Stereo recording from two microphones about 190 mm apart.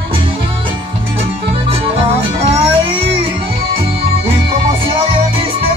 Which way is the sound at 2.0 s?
30° right (ahead or behind).